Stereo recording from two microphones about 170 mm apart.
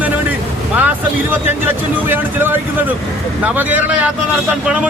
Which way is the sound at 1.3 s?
10° right (ahead or behind).